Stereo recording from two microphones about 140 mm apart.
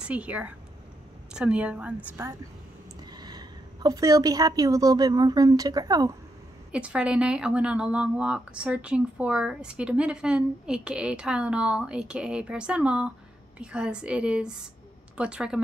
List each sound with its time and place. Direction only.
0.0 s speech: 10° right (ahead or behind)
3.1 s a woman's voice: 30° right (ahead or behind)
6.7 s speech: 5° right (ahead or behind)